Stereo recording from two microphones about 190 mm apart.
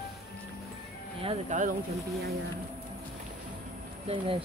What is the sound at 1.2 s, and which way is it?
Speech, 35° right (ahead or behind).